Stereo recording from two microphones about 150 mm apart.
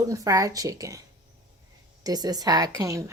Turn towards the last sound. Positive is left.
turn(degrees=-20)  # may be behind; listen again after turning